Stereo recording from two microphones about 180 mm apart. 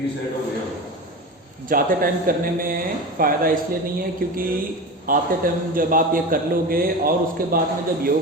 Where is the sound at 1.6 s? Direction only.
50° right (ahead or behind).